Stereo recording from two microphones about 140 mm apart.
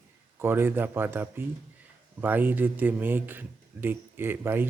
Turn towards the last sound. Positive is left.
turn(degrees=-15)  # may be behind; listen again after turning